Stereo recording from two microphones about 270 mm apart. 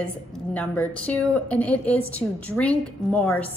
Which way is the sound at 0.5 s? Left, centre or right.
Centre.